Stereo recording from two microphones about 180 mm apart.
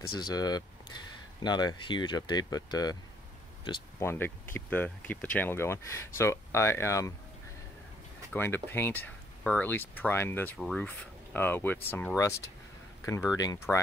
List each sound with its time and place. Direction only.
0.2 s speech: 20° left (ahead or behind)
4.0 s speech: 15° left (ahead or behind)
8.3 s speech: 10° left (ahead or behind)